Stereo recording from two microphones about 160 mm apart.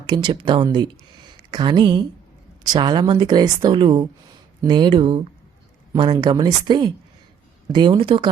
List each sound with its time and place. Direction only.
0.0 s speech: 30° right (ahead or behind)